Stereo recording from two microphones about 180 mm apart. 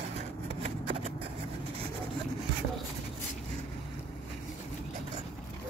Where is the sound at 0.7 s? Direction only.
35° right (ahead or behind).